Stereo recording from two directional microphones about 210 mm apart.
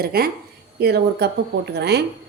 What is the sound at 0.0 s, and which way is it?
A woman's voice, 45° right (ahead or behind).